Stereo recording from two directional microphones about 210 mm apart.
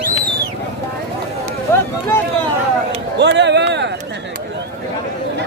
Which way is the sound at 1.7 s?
10° left (ahead or behind).